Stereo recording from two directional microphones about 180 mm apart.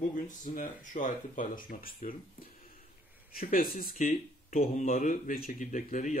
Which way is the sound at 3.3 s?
55° left (ahead or behind).